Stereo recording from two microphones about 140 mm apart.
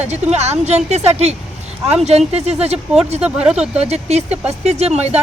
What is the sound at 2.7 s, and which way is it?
Speech, 5° right (ahead or behind).